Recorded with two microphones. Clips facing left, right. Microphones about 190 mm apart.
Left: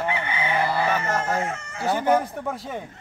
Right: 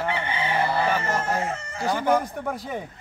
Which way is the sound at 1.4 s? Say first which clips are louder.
Right 1 dB; 35° right (ahead or behind).